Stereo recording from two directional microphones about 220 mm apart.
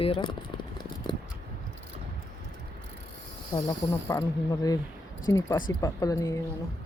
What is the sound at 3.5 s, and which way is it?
Speech, 15° left (ahead or behind).